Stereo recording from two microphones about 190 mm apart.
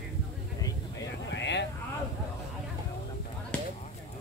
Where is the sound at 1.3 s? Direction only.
65° left (ahead or behind).